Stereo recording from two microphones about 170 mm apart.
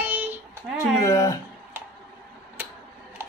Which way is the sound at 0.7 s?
20° left (ahead or behind).